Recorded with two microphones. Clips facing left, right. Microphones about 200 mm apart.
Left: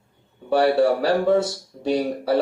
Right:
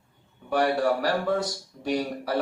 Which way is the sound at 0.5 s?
30° left (ahead or behind).